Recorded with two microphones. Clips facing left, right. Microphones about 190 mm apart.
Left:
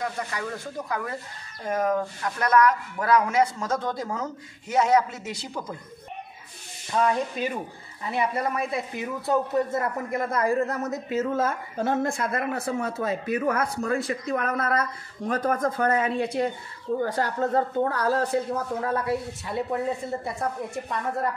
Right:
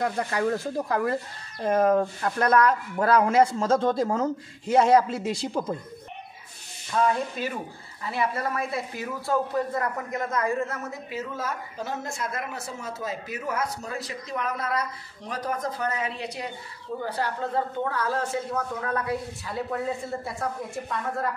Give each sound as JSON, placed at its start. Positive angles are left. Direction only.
{"t": 0.0, "sound": "speech", "side_deg": -40}
{"t": 6.9, "sound": "rub", "side_deg": 15}
{"t": 8.1, "sound": "speech", "side_deg": 20}
{"t": 11.1, "sound": "speech", "side_deg": 50}